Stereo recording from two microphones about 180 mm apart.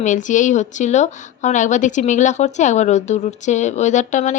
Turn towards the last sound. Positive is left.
turn(degrees=40)  # may be behind; listen again after turning